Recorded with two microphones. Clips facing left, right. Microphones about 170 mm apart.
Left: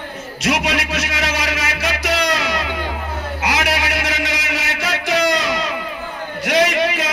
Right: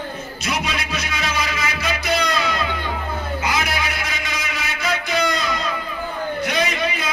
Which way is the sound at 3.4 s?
85° left.